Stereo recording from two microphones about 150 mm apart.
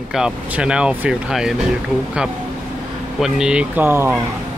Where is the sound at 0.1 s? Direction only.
5° right (ahead or behind).